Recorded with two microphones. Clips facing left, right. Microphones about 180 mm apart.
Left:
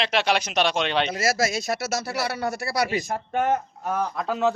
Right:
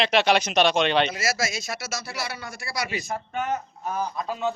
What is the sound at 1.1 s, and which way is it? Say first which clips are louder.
Speech: left 4 dB; 50° left (ahead or behind).